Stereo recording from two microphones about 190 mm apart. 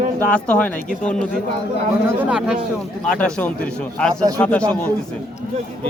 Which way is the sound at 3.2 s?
5° left (ahead or behind).